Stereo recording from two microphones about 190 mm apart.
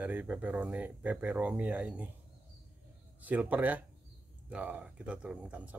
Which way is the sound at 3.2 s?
10° right (ahead or behind).